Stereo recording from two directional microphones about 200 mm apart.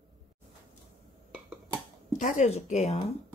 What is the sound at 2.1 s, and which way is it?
A woman's voice, 35° left (ahead or behind).